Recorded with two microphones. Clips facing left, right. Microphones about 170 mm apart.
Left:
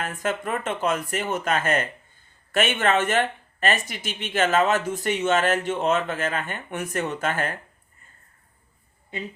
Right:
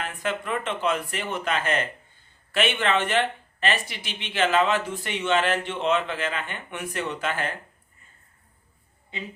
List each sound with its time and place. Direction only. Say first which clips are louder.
0.0 s speech: left 2 dB; 45° left (ahead or behind)